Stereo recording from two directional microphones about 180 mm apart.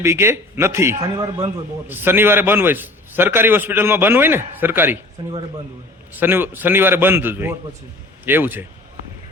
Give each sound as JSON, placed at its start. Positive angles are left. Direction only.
{"t": 0.0, "sound": "a man's voice", "side_deg": -15}
{"t": 6.1, "sound": "a man's voice", "side_deg": -10}